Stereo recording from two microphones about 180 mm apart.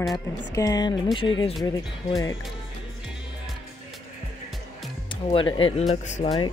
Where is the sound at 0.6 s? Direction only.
20° left (ahead or behind).